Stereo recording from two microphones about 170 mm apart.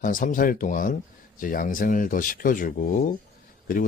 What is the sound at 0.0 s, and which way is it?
Speech, 55° left (ahead or behind).